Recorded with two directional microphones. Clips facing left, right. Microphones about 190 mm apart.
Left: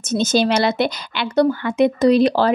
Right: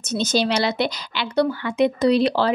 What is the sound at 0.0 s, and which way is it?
A woman's voice, 50° left (ahead or behind).